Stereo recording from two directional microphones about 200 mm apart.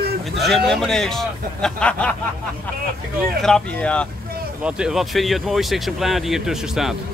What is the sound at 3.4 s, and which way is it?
Speech, 5° left (ahead or behind).